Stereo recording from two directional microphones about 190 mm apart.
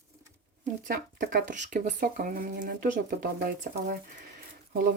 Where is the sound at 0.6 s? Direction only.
50° right (ahead or behind).